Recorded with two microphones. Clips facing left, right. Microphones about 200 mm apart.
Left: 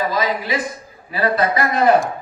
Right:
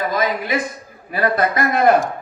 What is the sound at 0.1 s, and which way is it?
A man's voice, 50° right (ahead or behind).